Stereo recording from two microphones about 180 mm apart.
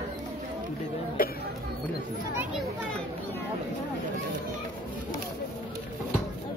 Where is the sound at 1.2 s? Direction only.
55° left (ahead or behind).